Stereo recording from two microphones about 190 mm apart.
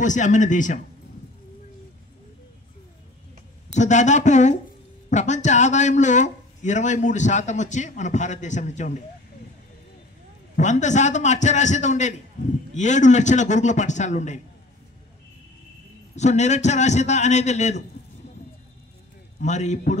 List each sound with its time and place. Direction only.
0.0 s a man's voice: 40° left (ahead or behind)
3.7 s a man's voice: 40° left (ahead or behind)
10.5 s a man's voice: 40° left (ahead or behind)
16.2 s a man's voice: 35° left (ahead or behind)
19.4 s a man's voice: 40° left (ahead or behind)